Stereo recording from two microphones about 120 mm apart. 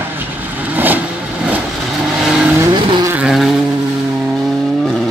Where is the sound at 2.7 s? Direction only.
40° right (ahead or behind).